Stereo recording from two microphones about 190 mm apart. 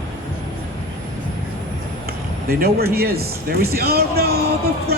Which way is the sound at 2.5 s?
55° right (ahead or behind).